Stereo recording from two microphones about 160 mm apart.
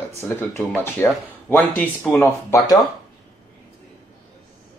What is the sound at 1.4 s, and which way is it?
Speech, 10° left (ahead or behind).